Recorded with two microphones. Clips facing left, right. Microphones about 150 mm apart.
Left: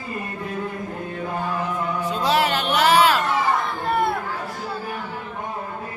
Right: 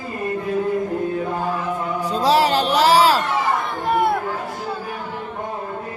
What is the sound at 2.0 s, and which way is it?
Music, 35° right (ahead or behind).